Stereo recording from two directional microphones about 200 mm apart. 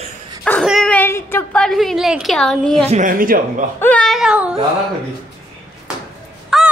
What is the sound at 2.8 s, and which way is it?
Speech, 40° right (ahead or behind).